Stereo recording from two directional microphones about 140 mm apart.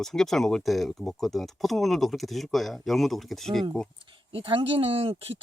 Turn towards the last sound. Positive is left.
turn(degrees=-45)  # may be behind; listen again after turning